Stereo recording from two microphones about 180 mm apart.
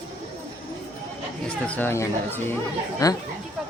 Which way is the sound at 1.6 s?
10° left (ahead or behind).